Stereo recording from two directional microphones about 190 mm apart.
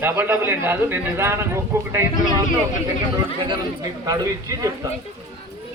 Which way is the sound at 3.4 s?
20° right (ahead or behind).